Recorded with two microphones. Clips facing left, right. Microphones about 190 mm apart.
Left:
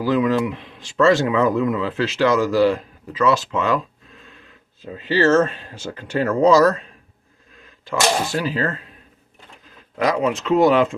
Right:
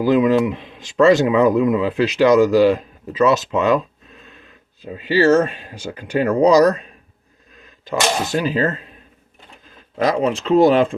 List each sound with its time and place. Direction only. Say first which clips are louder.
0.0 s speech: right 4 dB; 20° right (ahead or behind)
7.9 s speech: even; 20° right (ahead or behind)
10.0 s speech: right 2 dB; 30° right (ahead or behind)